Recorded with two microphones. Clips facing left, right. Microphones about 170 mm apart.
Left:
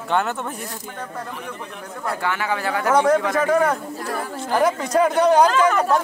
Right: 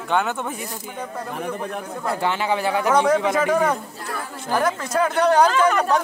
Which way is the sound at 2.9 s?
Centre (ahead or behind).